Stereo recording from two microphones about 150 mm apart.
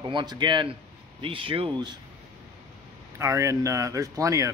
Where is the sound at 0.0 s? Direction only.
30° right (ahead or behind).